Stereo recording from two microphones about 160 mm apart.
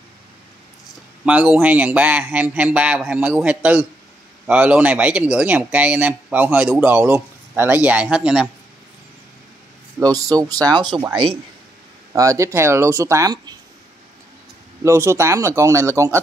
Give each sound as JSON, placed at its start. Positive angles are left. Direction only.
{"t": 1.2, "sound": "speech", "side_deg": -10}
{"t": 10.0, "sound": "speech", "side_deg": -20}
{"t": 12.1, "sound": "speech", "side_deg": -20}
{"t": 14.8, "sound": "speech", "side_deg": -20}